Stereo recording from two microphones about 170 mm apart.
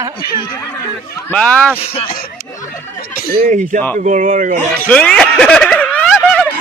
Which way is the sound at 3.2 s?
55° right (ahead or behind).